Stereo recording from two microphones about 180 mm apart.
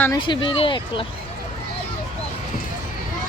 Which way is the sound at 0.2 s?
25° left (ahead or behind).